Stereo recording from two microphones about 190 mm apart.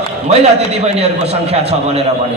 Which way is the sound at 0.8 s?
35° right (ahead or behind).